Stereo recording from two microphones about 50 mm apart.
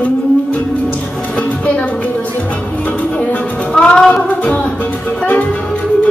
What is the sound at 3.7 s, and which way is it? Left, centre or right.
Music, centre.